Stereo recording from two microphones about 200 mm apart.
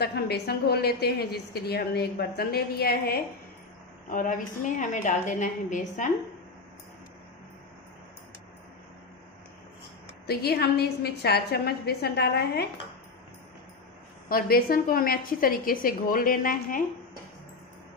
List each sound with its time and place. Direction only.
0.0 s a woman's voice: 55° left (ahead or behind)
10.2 s a woman's voice: 50° left (ahead or behind)
14.3 s a woman's voice: 45° left (ahead or behind)